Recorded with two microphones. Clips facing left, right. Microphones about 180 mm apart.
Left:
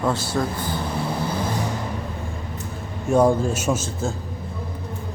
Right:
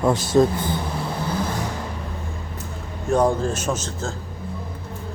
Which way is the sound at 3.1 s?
10° left (ahead or behind).